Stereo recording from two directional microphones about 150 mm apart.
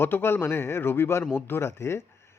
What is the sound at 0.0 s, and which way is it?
A man's voice, 15° left (ahead or behind).